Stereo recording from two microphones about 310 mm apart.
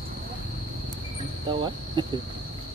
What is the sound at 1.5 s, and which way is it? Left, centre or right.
Cricket, centre.